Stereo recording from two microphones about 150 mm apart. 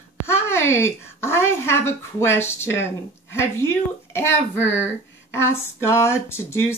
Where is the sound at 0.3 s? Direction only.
15° left (ahead or behind).